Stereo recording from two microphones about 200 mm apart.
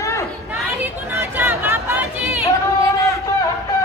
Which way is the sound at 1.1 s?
10° right (ahead or behind).